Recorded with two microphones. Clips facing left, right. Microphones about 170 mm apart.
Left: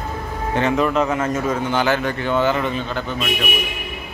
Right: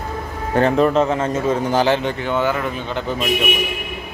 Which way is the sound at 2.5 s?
5° right (ahead or behind).